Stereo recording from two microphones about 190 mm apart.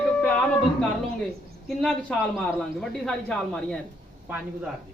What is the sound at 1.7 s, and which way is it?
Speech, 5° left (ahead or behind).